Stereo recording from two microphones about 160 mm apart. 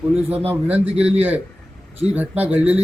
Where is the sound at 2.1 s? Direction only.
10° right (ahead or behind).